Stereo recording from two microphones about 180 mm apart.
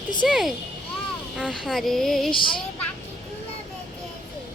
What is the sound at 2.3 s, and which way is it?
Speech, 25° left (ahead or behind).